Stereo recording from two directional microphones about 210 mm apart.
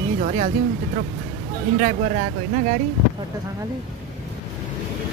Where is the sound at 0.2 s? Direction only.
40° right (ahead or behind).